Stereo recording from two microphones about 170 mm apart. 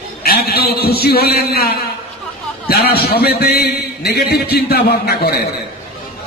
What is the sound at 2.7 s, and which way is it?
A man's voice, 65° left (ahead or behind).